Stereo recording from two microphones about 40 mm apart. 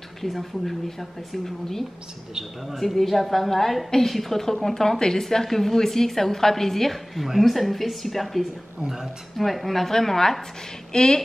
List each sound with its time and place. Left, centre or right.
0.2 s a woman's voice: centre
8.8 s speech: centre
9.4 s a woman's voice: centre